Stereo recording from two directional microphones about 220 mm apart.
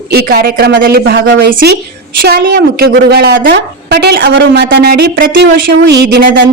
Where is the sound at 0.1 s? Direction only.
45° right (ahead or behind).